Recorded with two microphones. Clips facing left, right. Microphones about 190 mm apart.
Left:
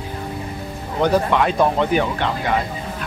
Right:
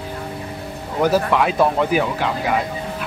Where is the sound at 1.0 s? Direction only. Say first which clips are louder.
Even; 5° right (ahead or behind).